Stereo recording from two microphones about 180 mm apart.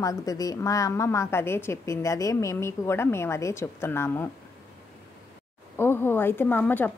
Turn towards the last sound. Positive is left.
turn(degrees=10)  # may be behind; listen again after turning